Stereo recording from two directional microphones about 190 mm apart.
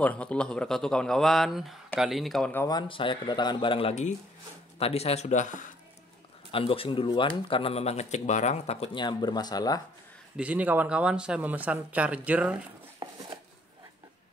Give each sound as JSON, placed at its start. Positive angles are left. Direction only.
{"t": 0.0, "sound": "speech", "side_deg": 5}
{"t": 2.7, "sound": "speech", "side_deg": 25}
{"t": 6.5, "sound": "speech", "side_deg": 30}
{"t": 10.3, "sound": "speech", "side_deg": -5}
{"t": 13.0, "sound": "a sound", "side_deg": -20}